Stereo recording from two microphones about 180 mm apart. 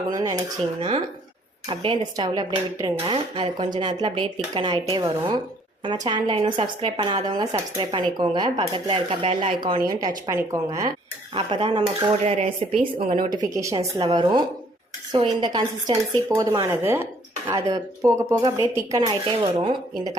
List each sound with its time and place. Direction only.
0.1 s speech: 20° right (ahead or behind)
0.8 s speech: 30° right (ahead or behind)
11.3 s speech: 30° right (ahead or behind)
13.6 s speech: 15° right (ahead or behind)